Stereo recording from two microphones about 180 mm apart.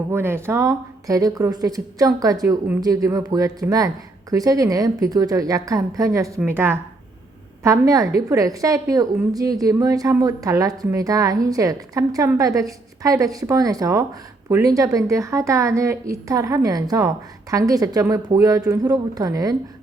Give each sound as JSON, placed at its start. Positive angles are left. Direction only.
{"t": 0.1, "sound": "a woman's voice", "side_deg": -15}